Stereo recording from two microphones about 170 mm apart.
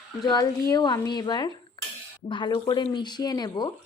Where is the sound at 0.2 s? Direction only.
25° left (ahead or behind).